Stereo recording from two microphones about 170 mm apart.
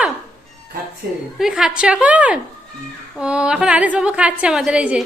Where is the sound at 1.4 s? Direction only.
5° right (ahead or behind).